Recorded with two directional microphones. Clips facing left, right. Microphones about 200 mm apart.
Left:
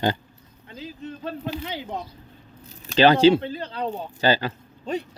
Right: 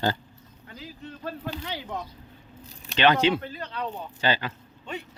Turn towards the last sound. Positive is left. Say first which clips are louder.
# left 8 dB
turn(degrees=35)  # may be behind; listen again after turning